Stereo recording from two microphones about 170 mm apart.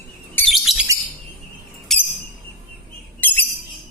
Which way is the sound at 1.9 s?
Centre (ahead or behind).